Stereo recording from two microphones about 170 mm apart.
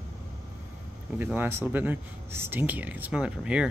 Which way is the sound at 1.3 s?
10° right (ahead or behind).